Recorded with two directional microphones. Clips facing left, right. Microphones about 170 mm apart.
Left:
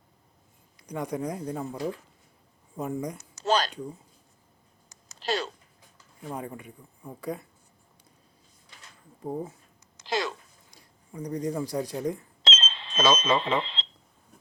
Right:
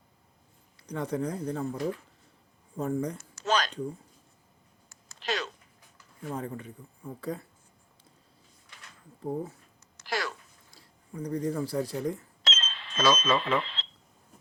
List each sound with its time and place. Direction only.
0.8 s speech: 15° left (ahead or behind)
3.4 s speech: 35° left (ahead or behind)
5.2 s speech: 35° left (ahead or behind)
6.2 s speech: 15° left (ahead or behind)
10.1 s a sound: 20° left (ahead or behind)